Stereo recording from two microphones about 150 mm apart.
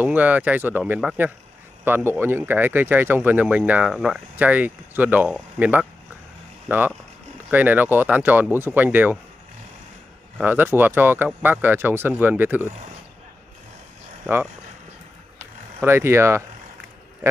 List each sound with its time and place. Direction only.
0.0 s speech: 10° right (ahead or behind)
10.4 s speech: 15° right (ahead or behind)
15.8 s speech: 15° right (ahead or behind)